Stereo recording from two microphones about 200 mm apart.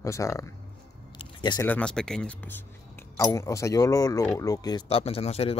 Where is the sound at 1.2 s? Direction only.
25° left (ahead or behind).